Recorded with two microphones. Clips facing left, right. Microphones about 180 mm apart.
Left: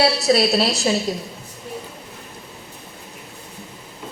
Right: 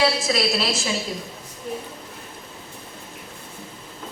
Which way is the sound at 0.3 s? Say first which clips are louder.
Left 6 dB; 40° left (ahead or behind).